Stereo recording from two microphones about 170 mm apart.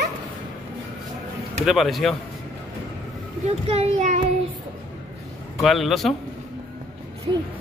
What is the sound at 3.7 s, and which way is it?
Child singing, 35° right (ahead or behind).